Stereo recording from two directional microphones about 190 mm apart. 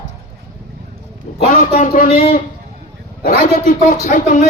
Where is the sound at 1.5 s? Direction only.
45° left (ahead or behind).